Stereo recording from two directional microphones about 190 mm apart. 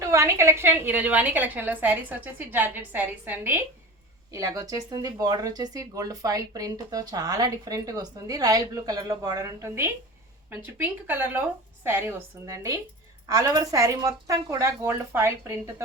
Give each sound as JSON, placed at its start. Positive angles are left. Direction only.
{"t": 0.0, "sound": "a woman's voice", "side_deg": -15}